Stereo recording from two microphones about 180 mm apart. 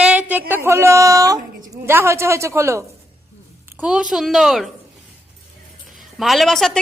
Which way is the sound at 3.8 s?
5° right (ahead or behind).